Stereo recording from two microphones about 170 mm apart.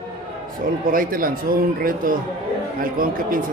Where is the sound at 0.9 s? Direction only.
55° right (ahead or behind).